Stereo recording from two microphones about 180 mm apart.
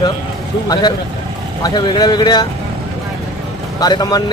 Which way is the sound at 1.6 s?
25° left (ahead or behind).